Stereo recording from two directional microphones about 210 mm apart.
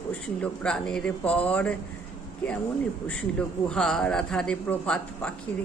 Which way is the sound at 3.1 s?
5° left (ahead or behind).